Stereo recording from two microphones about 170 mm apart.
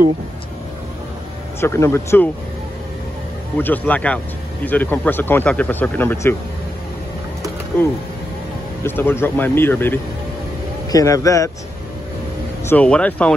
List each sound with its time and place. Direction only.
1.6 s speech: 15° left (ahead or behind)
3.5 s speech: 10° left (ahead or behind)
8.8 s speech: 15° left (ahead or behind)
12.6 s speech: 10° left (ahead or behind)